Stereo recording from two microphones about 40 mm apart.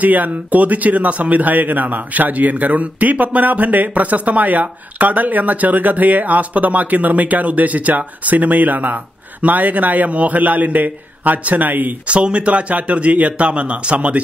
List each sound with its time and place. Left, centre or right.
0.0 s speech: right
12.1 s a man's voice: right